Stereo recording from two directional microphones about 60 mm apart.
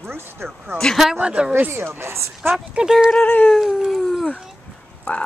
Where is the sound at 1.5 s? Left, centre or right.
Right.